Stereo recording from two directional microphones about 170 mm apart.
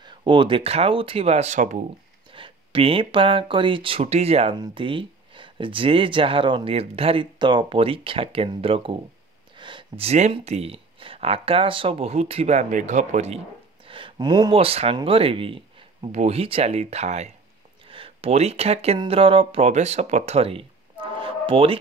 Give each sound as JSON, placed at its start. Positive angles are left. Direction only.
{"t": 0.0, "sound": "speech", "side_deg": -30}
{"t": 2.3, "sound": "speech", "side_deg": -30}
{"t": 13.8, "sound": "speech", "side_deg": -30}